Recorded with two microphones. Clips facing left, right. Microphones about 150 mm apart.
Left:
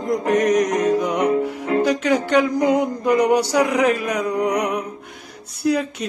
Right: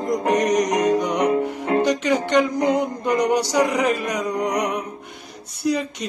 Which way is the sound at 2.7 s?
5° left (ahead or behind).